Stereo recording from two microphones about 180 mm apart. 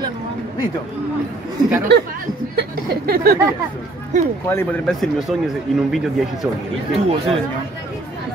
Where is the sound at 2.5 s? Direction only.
60° right (ahead or behind).